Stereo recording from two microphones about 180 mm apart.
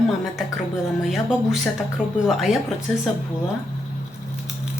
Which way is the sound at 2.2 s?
Centre (ahead or behind).